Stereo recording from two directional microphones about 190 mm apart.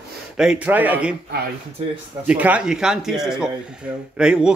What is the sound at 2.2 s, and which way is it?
Speech, 5° right (ahead or behind).